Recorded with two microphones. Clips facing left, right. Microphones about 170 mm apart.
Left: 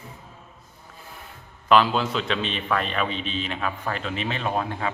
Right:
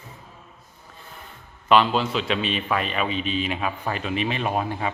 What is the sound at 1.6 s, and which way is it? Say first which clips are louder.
A man's voice: even; centre (ahead or behind).